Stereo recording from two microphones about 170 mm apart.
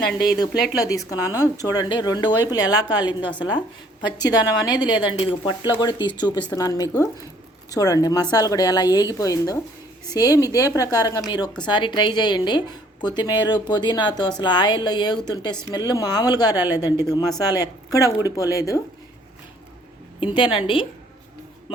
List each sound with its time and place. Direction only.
0.8 s a woman's voice: 20° left (ahead or behind)
20.1 s a woman's voice: 30° left (ahead or behind)